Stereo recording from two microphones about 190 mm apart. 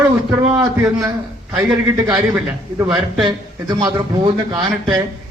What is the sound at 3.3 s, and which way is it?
A man's voice, 20° right (ahead or behind).